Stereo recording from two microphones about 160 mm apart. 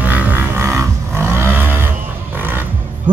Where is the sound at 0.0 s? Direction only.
10° right (ahead or behind).